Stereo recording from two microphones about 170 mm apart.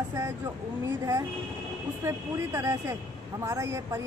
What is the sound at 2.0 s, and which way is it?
A woman's voice, 15° right (ahead or behind).